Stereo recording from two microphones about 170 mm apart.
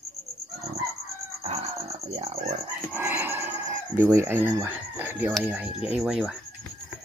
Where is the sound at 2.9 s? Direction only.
10° right (ahead or behind).